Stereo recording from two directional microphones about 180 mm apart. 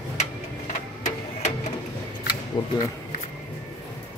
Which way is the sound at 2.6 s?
20° left (ahead or behind).